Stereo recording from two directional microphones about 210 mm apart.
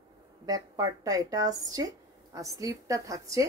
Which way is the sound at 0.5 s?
15° right (ahead or behind).